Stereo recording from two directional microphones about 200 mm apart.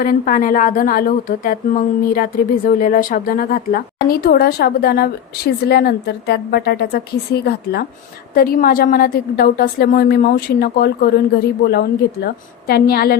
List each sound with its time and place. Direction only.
0.0 s a woman's voice: 40° left (ahead or behind)